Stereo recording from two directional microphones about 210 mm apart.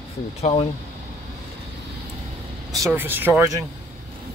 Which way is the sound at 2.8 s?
10° right (ahead or behind).